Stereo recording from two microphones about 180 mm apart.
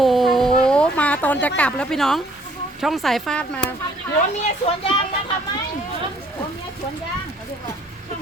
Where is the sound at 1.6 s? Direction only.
5° left (ahead or behind).